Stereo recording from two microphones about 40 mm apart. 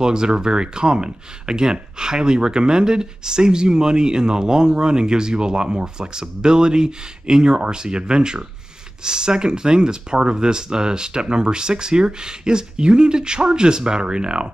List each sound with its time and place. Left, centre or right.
0.0 s speech: centre